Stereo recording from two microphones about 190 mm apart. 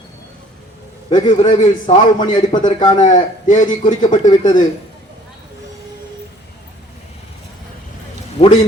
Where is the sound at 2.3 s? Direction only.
25° left (ahead or behind).